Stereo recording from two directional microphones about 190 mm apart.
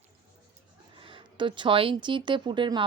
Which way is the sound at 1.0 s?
25° right (ahead or behind).